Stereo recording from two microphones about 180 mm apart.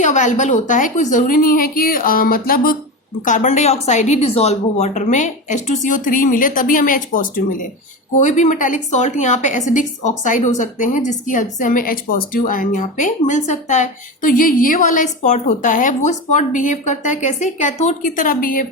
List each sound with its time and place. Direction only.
0.0 s a woman's voice: 40° left (ahead or behind)